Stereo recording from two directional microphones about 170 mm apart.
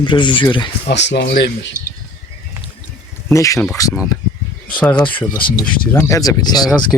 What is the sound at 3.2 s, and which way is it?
Speech, 20° left (ahead or behind).